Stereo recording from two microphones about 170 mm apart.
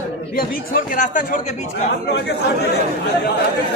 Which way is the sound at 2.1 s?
75° left (ahead or behind).